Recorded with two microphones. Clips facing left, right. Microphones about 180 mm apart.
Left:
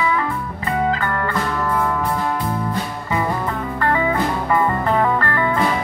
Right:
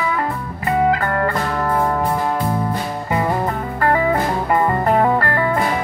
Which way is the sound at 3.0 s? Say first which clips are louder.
Right 3 dB; 40° right (ahead or behind).